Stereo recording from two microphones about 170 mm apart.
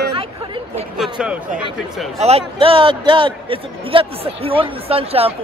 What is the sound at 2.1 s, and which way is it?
A man's voice, 40° right (ahead or behind).